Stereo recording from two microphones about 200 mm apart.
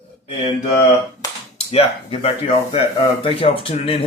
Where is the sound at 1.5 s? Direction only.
30° left (ahead or behind).